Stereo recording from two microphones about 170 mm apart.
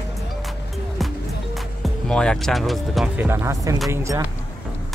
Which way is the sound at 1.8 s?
5° left (ahead or behind).